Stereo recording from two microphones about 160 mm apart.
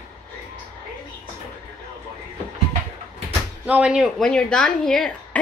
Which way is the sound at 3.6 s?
10° right (ahead or behind).